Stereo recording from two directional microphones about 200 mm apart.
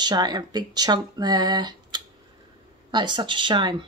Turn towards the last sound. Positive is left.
turn(degrees=-25)  # may be behind; listen again after turning